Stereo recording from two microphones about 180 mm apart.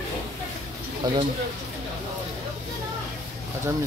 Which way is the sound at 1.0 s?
20° right (ahead or behind).